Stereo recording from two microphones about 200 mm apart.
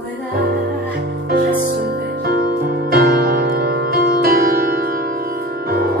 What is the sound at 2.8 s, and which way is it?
Music, 50° right (ahead or behind).